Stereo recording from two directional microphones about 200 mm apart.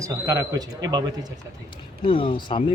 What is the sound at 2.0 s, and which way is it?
Speech, 25° left (ahead or behind).